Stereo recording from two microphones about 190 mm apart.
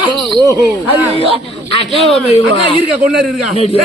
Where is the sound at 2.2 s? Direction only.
35° left (ahead or behind).